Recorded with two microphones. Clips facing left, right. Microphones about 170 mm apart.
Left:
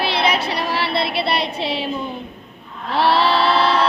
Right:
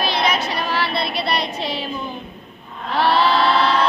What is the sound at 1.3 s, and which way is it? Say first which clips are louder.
Child singing: left 2 dB; 30° left (ahead or behind).